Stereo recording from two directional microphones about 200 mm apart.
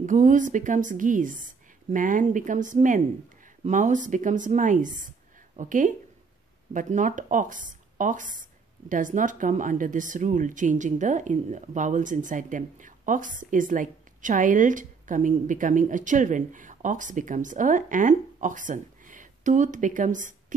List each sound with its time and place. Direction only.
0.0 s speech: 40° right (ahead or behind)